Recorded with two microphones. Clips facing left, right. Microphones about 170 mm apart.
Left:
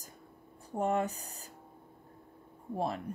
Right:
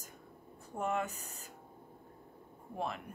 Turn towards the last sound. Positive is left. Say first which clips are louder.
# left 5 dB
turn(degrees=35)  # may be behind; listen again after turning